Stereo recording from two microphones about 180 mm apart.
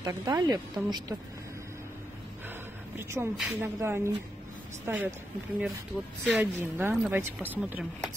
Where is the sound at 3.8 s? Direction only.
15° right (ahead or behind).